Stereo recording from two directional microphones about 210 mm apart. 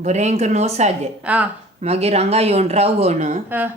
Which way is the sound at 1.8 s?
30° right (ahead or behind).